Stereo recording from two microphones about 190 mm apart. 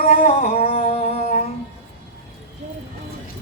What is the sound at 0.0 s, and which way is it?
Music, 35° left (ahead or behind).